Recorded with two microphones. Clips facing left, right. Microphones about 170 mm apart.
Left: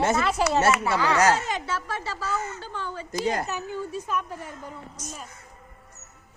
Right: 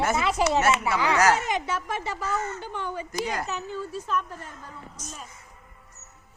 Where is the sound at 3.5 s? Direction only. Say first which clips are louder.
Left 1 dB; 10° left (ahead or behind).